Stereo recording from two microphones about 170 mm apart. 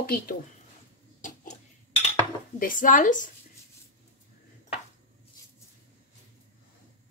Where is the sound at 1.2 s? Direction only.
50° left (ahead or behind).